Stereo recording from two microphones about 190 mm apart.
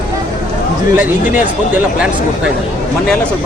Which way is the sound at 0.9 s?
10° right (ahead or behind).